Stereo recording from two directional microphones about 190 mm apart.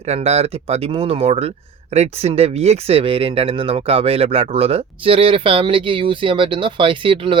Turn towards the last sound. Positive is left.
turn(degrees=-25)  # may be behind; listen again after turning